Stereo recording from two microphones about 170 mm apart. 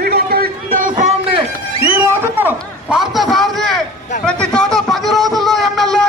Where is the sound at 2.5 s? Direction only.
Centre (ahead or behind).